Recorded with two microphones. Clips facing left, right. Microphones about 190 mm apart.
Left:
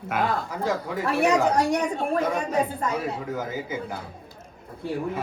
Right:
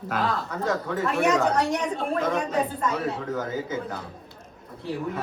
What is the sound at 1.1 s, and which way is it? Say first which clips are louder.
Speech: left 2 dB; 35° left (ahead or behind).